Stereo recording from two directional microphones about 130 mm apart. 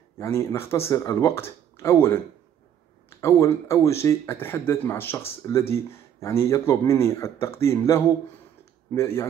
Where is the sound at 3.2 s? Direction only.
20° left (ahead or behind).